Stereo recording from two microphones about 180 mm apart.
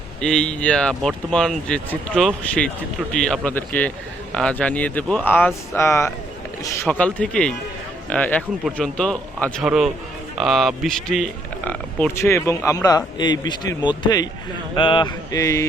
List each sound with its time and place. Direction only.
0.2 s speech: 5° left (ahead or behind); by 15.6 s 20° left (ahead or behind)